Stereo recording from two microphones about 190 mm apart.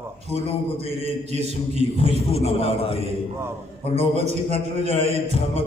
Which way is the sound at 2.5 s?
30° left (ahead or behind).